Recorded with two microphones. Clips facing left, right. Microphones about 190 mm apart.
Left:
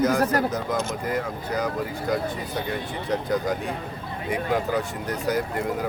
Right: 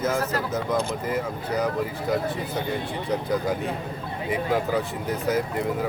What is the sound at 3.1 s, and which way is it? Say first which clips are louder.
Speech: left 1 dB; centre (ahead or behind).